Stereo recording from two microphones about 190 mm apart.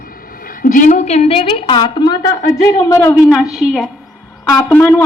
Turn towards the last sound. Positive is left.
turn(degrees=10)  # may be behind; listen again after turning